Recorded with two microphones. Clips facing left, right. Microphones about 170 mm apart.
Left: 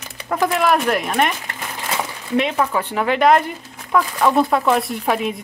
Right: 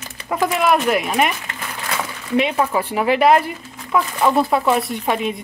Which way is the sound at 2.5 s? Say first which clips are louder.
Right 1 dB; 15° right (ahead or behind).